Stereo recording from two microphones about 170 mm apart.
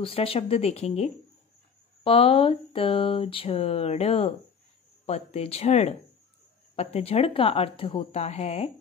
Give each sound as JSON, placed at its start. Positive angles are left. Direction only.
{"t": 0.0, "sound": "speech", "side_deg": 35}